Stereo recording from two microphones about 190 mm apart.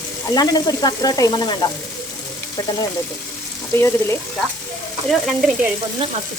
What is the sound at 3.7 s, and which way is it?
Speech, 15° left (ahead or behind).